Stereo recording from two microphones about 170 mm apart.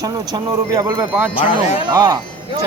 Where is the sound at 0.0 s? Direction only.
20° right (ahead or behind).